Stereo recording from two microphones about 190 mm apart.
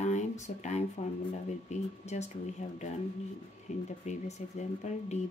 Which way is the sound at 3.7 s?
35° left (ahead or behind).